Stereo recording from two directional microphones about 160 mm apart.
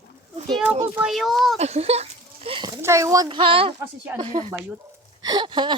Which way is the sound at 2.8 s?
20° right (ahead or behind).